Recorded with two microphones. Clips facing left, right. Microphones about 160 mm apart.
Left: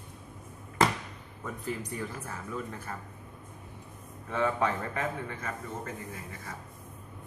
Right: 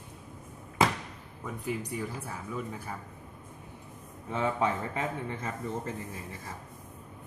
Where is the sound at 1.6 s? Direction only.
10° right (ahead or behind).